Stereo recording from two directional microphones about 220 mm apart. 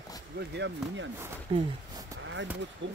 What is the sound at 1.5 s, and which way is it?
Speech, 25° right (ahead or behind).